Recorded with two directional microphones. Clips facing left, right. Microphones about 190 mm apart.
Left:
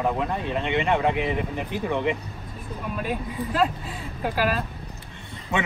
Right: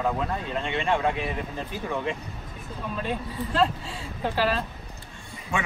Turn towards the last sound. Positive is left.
turn(degrees=20)  # may be behind; listen again after turning